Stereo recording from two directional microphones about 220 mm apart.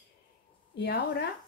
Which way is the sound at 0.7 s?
45° left (ahead or behind).